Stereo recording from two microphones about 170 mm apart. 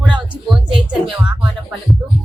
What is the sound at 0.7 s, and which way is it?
Speech, 30° right (ahead or behind).